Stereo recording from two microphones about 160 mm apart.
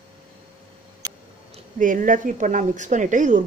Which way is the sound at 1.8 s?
55° right (ahead or behind).